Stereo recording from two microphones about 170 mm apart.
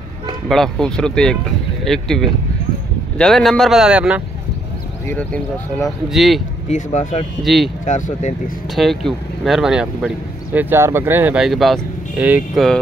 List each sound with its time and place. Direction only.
0.5 s speech: 5° left (ahead or behind)
5.0 s speech: 10° left (ahead or behind)
6.7 s speech: 45° left (ahead or behind)
7.4 s speech: centre (ahead or behind)
7.8 s speech: 45° left (ahead or behind)
8.7 s speech: centre (ahead or behind)